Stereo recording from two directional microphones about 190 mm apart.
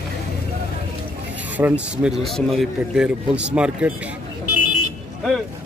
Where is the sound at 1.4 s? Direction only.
10° right (ahead or behind).